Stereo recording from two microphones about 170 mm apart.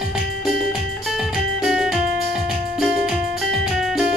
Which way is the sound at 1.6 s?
5° right (ahead or behind).